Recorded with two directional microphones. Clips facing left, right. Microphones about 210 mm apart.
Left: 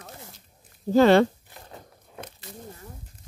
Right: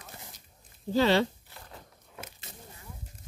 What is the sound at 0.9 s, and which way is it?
Speech, 50° left (ahead or behind).